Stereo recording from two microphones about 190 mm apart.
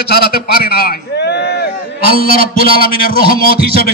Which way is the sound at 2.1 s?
50° left (ahead or behind).